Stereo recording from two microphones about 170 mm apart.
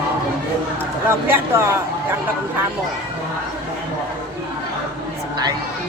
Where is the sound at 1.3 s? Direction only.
15° right (ahead or behind).